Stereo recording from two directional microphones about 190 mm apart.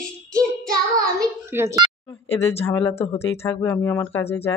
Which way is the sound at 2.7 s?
10° left (ahead or behind).